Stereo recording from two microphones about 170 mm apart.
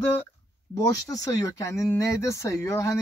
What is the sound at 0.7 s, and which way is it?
Speech, 20° left (ahead or behind).